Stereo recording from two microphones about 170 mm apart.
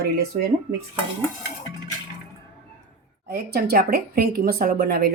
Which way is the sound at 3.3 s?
65° right (ahead or behind).